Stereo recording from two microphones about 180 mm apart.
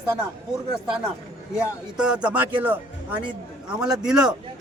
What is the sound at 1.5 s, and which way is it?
A man's voice, 5° right (ahead or behind).